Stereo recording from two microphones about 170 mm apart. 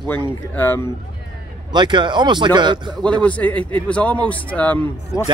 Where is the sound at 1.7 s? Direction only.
25° right (ahead or behind).